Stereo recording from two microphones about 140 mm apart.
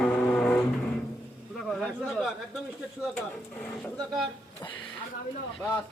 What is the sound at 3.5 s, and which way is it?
Music, 10° left (ahead or behind).